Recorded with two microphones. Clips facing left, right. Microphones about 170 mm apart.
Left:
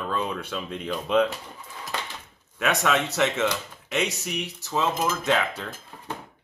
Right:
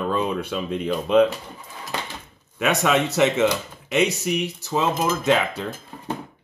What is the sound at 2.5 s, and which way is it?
Speech, 5° right (ahead or behind).